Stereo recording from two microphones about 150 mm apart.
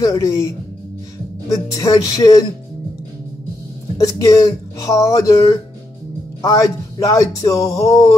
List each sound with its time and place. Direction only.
0.0 s speech: 25° left (ahead or behind)
4.0 s speech: 25° left (ahead or behind)